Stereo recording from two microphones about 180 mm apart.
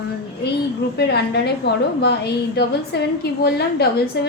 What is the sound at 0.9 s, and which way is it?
A woman's voice, 65° left (ahead or behind).